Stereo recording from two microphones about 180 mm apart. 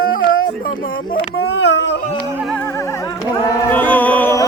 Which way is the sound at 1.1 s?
75° left (ahead or behind).